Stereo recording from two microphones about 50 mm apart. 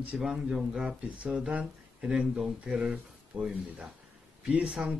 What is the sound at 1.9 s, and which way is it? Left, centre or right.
Speech, centre.